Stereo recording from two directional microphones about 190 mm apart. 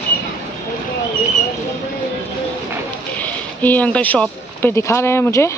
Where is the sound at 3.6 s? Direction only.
10° left (ahead or behind).